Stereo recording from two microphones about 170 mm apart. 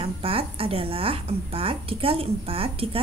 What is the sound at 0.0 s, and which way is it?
A woman's voice, 35° right (ahead or behind).